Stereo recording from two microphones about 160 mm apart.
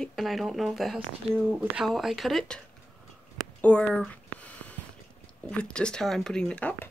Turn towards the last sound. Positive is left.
turn(degrees=10)  # may be behind; listen again after turning